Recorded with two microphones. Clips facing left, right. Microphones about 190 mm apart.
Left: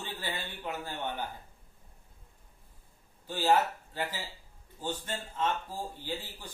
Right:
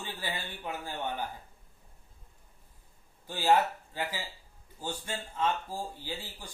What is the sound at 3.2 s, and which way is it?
Speech, 15° right (ahead or behind).